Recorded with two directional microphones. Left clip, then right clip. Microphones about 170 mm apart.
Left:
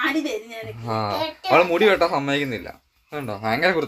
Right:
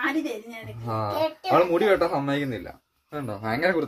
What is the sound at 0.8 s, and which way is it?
Speech, 15° left (ahead or behind).